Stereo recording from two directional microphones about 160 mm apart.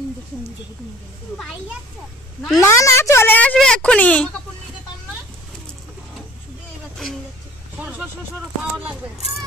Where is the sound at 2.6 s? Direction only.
20° left (ahead or behind).